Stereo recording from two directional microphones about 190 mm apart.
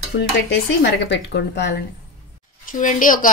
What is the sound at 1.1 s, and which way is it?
Speech, 60° left (ahead or behind).